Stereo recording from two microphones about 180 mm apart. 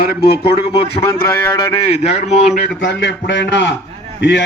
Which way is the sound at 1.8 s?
35° left (ahead or behind).